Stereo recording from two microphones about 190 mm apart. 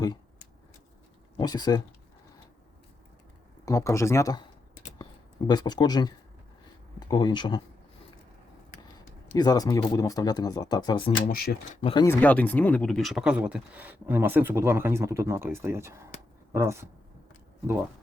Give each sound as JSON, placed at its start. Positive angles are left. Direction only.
{"t": 1.4, "sound": "speech", "side_deg": 20}
{"t": 3.7, "sound": "speech", "side_deg": 15}
{"t": 5.5, "sound": "speech", "side_deg": 20}
{"t": 9.3, "sound": "speech", "side_deg": 20}
{"t": 11.3, "sound": "speech", "side_deg": 50}
{"t": 11.8, "sound": "speech", "side_deg": 30}
{"t": 12.0, "sound": "speech", "side_deg": 10}